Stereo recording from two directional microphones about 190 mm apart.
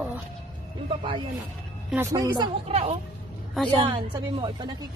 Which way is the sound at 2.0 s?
10° right (ahead or behind).